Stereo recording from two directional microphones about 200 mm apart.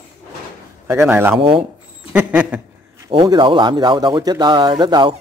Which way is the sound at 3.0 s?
20° right (ahead or behind).